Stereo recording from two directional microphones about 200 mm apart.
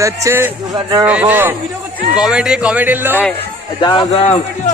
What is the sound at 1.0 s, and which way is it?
Speech, 10° right (ahead or behind).